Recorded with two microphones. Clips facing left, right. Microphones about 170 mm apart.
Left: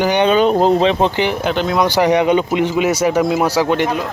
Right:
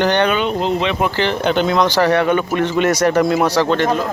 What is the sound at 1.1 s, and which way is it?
Speech, 15° left (ahead or behind).